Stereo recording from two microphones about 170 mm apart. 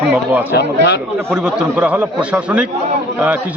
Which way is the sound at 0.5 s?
75° left (ahead or behind).